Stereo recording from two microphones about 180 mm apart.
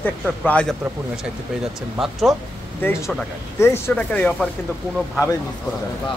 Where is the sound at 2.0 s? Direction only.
Centre (ahead or behind).